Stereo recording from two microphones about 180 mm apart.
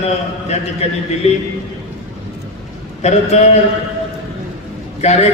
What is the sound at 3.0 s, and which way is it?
Speech, 40° left (ahead or behind).